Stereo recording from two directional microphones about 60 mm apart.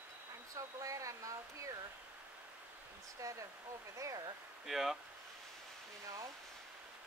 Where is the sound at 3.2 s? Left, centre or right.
Right.